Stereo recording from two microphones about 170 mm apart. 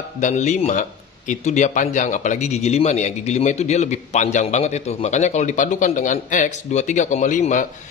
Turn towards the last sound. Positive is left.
turn(degrees=45)  # may be behind; listen again after turning